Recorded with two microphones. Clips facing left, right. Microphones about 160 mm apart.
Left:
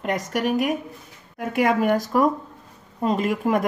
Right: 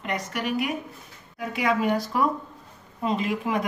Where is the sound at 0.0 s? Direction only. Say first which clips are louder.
Left 5 dB; 45° left (ahead or behind).